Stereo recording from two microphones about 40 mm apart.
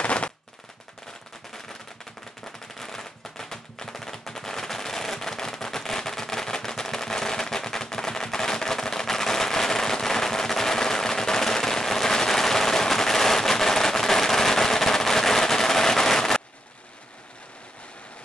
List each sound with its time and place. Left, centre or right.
0.0 s machine gun: left
2.4 s machine gun: centre